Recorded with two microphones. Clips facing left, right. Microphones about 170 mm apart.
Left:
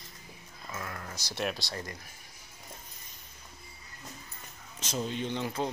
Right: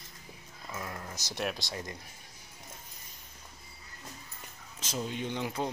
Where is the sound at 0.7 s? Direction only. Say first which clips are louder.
Even; 15° right (ahead or behind).